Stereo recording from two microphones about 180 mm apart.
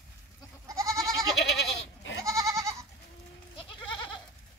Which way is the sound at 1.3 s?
80° left.